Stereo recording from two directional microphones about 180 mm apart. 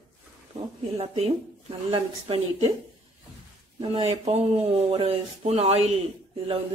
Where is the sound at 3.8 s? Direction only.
35° right (ahead or behind).